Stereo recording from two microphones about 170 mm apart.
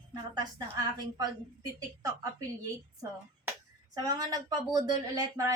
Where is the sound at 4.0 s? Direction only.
20° right (ahead or behind).